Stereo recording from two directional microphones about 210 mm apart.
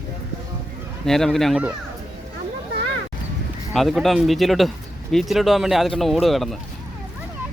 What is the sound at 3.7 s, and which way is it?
A man's voice, centre (ahead or behind).